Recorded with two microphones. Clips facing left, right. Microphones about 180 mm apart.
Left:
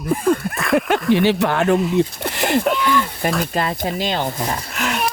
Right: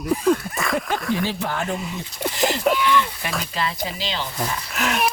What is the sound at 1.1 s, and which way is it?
Speech, 70° left (ahead or behind).